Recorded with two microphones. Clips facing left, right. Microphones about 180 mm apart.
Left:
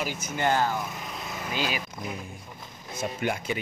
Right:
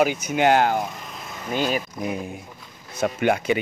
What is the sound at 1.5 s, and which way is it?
Speech, 45° right (ahead or behind).